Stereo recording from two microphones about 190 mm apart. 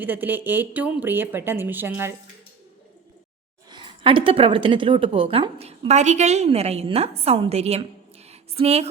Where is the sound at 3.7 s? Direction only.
25° right (ahead or behind).